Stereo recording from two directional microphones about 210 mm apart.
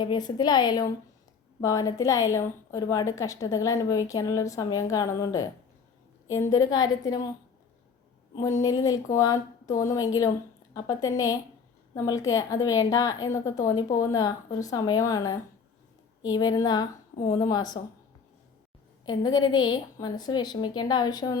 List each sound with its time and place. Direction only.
0.0 s a woman's voice: 20° left (ahead or behind)
8.4 s a woman's voice: 15° left (ahead or behind)
19.0 s a woman's voice: 20° left (ahead or behind)